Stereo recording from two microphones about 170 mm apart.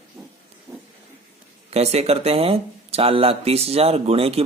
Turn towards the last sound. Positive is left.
turn(degrees=-35)  # may be behind; listen again after turning